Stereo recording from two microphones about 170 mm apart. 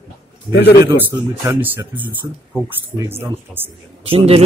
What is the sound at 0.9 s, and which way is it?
Speech, 15° right (ahead or behind).